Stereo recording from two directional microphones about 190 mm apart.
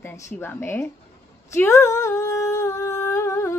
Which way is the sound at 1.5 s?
15° left (ahead or behind).